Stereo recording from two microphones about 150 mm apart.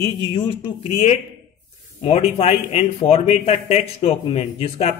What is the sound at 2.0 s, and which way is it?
Speech, 45° left (ahead or behind).